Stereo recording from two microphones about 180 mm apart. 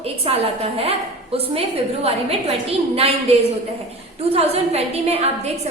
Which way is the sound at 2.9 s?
35° right (ahead or behind).